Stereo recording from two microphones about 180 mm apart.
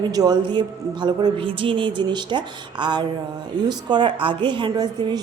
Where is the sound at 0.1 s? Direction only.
20° right (ahead or behind).